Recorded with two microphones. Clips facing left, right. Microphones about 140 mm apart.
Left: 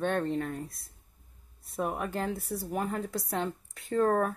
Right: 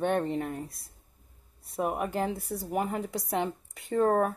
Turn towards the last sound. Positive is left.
turn(degrees=-15)  # may be behind; listen again after turning